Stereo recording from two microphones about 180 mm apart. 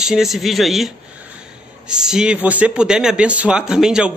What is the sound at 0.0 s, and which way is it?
A man's voice, centre (ahead or behind).